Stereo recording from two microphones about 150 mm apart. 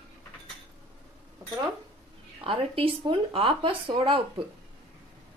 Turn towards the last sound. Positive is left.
turn(degrees=-35)  # may be behind; listen again after turning